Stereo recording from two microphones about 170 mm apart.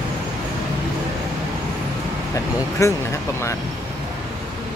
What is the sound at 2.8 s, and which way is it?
Speech, 15° left (ahead or behind).